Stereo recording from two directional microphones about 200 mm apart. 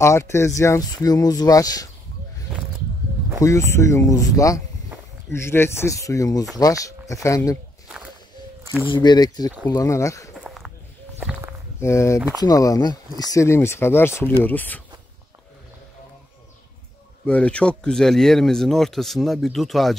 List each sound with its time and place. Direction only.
0.0 s speech: 15° left (ahead or behind)
3.3 s speech: 15° left (ahead or behind)
8.8 s speech: 20° left (ahead or behind)
10.3 s a sound: centre (ahead or behind)
11.8 s speech: 15° left (ahead or behind)
17.3 s speech: 5° left (ahead or behind)